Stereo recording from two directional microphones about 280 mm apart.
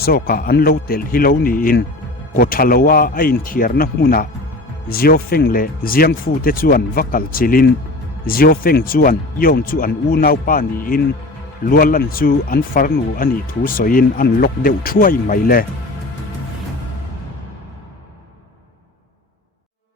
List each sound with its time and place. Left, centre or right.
0.0 s speech: left